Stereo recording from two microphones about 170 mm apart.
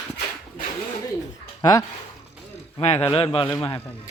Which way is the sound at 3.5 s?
10° left (ahead or behind).